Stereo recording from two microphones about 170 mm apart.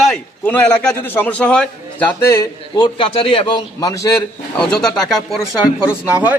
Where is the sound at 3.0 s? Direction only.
30° left (ahead or behind).